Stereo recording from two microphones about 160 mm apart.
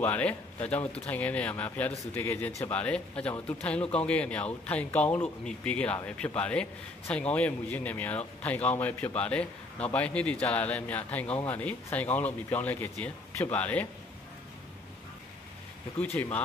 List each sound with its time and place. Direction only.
0.0 s a man's voice: 10° left (ahead or behind)
16.0 s a man's voice: 10° left (ahead or behind)